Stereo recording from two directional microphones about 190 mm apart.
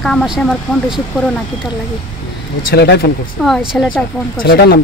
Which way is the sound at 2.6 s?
60° left (ahead or behind).